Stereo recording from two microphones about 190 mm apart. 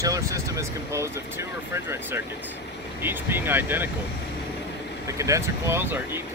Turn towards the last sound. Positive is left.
turn(degrees=-10)  # may be behind; listen again after turning